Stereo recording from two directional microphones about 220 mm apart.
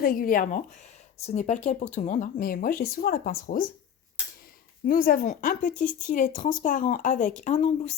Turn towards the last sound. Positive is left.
turn(degrees=30)  # may be behind; listen again after turning